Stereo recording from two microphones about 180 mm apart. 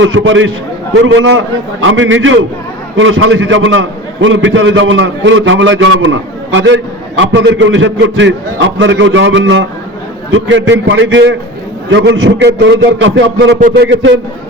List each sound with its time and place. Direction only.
0.0 s a man's voice: 90° right